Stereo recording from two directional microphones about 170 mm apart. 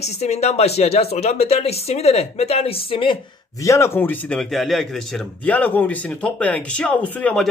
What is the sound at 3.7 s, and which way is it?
A man's voice, 15° left (ahead or behind).